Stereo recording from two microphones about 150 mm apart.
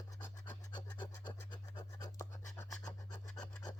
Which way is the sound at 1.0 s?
30° left (ahead or behind).